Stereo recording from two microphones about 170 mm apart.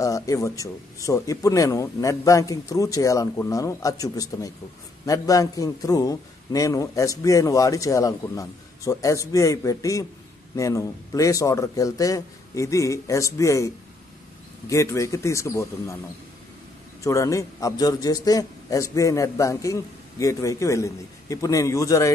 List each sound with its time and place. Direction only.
0.0 s a man's voice: 20° left (ahead or behind)
14.7 s a man's voice: 15° left (ahead or behind)
17.0 s a man's voice: 20° left (ahead or behind)